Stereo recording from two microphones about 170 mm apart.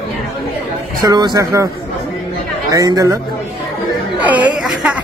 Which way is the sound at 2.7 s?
20° right (ahead or behind).